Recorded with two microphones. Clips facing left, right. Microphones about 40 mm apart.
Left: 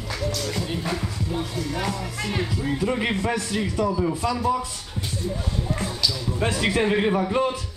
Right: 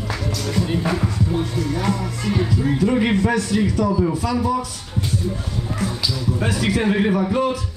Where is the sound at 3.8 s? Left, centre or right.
Centre.